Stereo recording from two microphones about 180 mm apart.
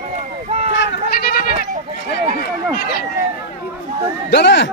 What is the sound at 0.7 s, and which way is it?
Sheep, 75° left (ahead or behind).